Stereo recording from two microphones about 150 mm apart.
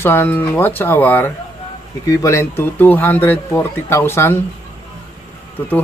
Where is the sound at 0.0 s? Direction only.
15° left (ahead or behind).